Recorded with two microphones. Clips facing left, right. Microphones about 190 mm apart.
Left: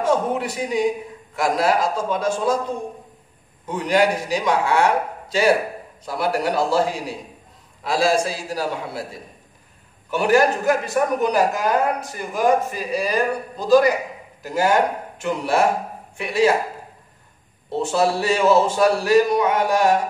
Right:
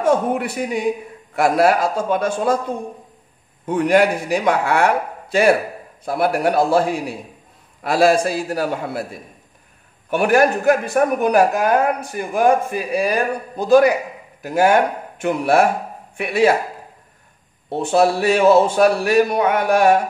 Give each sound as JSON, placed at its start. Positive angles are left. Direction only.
{"t": 0.0, "sound": "a man's voice", "side_deg": -55}
{"t": 3.6, "sound": "a man's voice", "side_deg": -55}
{"t": 10.0, "sound": "a man's voice", "side_deg": -55}
{"t": 17.6, "sound": "a man's voice", "side_deg": -60}